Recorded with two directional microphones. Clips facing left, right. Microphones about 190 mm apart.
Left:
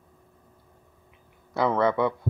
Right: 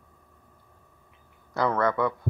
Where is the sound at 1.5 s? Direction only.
20° left (ahead or behind).